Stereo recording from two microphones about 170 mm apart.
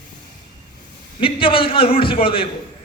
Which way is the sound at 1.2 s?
30° left (ahead or behind).